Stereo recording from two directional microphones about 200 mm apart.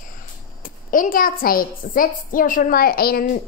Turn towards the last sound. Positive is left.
turn(degrees=50)  # may be behind; listen again after turning